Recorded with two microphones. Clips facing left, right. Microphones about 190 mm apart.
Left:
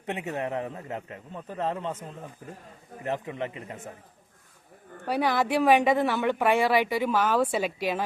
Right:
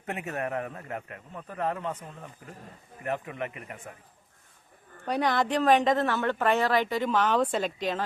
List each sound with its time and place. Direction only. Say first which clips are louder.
0.0 s speech: left 2 dB; 20° left (ahead or behind)
3.0 s speech: left 1 dB; 25° left (ahead or behind)
5.0 s a woman's voice: left 1 dB; 5° left (ahead or behind)